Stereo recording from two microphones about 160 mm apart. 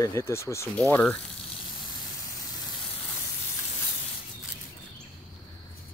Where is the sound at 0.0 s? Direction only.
20° left (ahead or behind).